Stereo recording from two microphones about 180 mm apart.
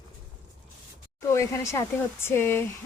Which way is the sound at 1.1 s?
15° left (ahead or behind).